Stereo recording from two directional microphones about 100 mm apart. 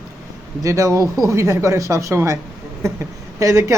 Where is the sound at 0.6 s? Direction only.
35° right (ahead or behind).